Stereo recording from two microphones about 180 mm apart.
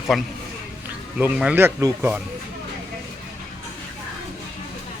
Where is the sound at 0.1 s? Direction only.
Centre (ahead or behind).